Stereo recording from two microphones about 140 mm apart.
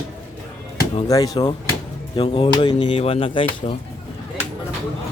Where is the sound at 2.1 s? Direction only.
40° left (ahead or behind).